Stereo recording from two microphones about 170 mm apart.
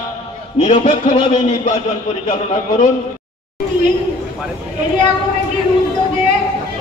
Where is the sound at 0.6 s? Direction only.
45° left (ahead or behind).